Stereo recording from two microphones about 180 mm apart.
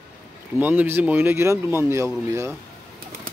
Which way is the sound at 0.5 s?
10° right (ahead or behind).